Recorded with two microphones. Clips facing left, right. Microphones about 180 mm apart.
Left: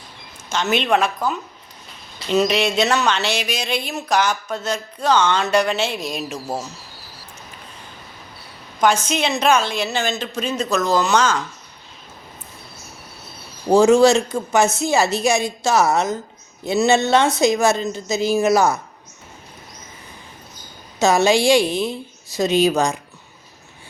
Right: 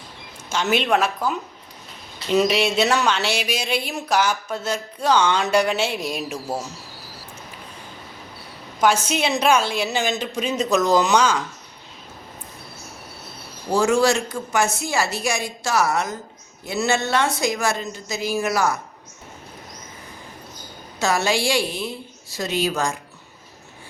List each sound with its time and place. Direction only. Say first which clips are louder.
0.5 s speech: left 1 dB; 10° right (ahead or behind)
8.8 s speech: left 1 dB; 10° right (ahead or behind)
13.7 s speech: left 6 dB; 20° left (ahead or behind)
21.0 s speech: left 6 dB; 20° left (ahead or behind)